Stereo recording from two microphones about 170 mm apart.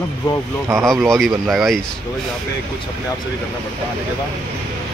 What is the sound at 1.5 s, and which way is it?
Speech, centre (ahead or behind).